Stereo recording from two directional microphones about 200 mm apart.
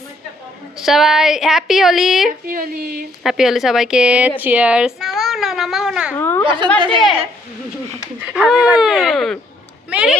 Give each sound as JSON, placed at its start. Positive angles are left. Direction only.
{"t": 0.8, "sound": "speech", "side_deg": 0}
{"t": 2.5, "sound": "a woman's voice", "side_deg": -45}
{"t": 3.2, "sound": "a child's voice", "side_deg": 0}
{"t": 6.1, "sound": "speech", "side_deg": 10}
{"t": 6.7, "sound": "a woman's voice", "side_deg": -25}
{"t": 8.2, "sound": "speech", "side_deg": -5}